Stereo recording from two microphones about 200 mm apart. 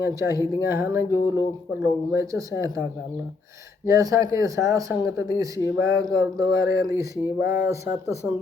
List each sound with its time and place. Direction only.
0.0 s speech: 15° right (ahead or behind)
3.8 s speech: 15° right (ahead or behind)
6.5 s speech: 55° left (ahead or behind)
6.8 s speech: 15° right (ahead or behind)